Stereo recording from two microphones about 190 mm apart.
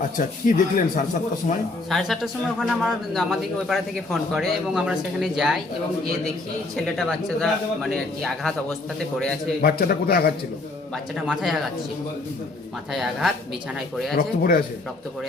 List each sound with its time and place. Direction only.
0.2 s speech: 45° left (ahead or behind)
1.9 s a man's voice: centre (ahead or behind)
6.7 s a man's voice: centre (ahead or behind)
9.6 s speech: 55° left (ahead or behind)
10.9 s a man's voice: centre (ahead or behind)
12.9 s a man's voice: centre (ahead or behind)
14.2 s speech: 50° left (ahead or behind)